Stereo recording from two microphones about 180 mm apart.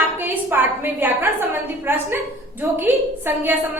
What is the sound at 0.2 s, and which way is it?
A woman's voice, 10° right (ahead or behind).